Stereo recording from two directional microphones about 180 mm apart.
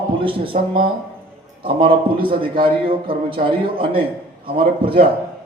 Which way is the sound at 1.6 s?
30° right (ahead or behind).